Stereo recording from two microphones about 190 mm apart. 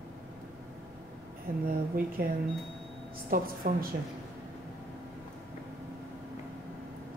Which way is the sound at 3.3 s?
50° right (ahead or behind).